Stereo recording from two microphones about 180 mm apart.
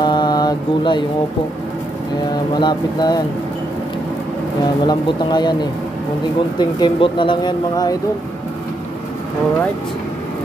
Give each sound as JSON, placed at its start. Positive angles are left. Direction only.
{"t": 0.0, "sound": "mantra", "side_deg": 25}
{"t": 2.5, "sound": "speech", "side_deg": 25}
{"t": 4.8, "sound": "speech", "side_deg": 25}
{"t": 6.8, "sound": "speech", "side_deg": 25}